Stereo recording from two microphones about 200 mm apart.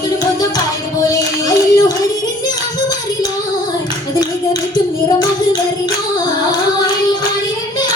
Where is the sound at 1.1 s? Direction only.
15° left (ahead or behind).